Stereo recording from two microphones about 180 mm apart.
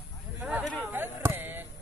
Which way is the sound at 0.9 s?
15° right (ahead or behind).